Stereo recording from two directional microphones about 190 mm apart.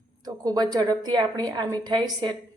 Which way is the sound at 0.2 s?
20° right (ahead or behind).